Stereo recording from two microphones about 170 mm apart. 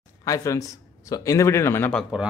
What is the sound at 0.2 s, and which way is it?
Speech, 20° left (ahead or behind).